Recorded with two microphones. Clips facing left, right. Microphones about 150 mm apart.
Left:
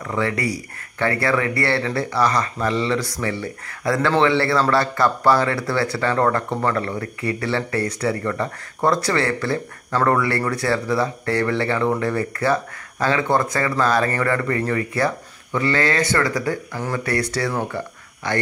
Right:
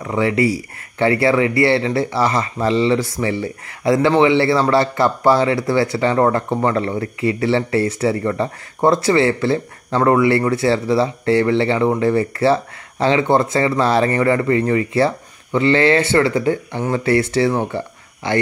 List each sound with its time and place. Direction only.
0.0 s speech: 20° right (ahead or behind)